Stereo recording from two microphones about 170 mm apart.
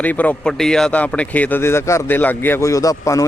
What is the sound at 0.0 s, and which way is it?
Speech, 10° left (ahead or behind).